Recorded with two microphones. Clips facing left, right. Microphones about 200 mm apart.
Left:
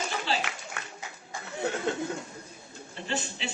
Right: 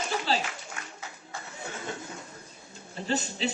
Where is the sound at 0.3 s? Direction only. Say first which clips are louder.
Right 2 dB; 40° right (ahead or behind).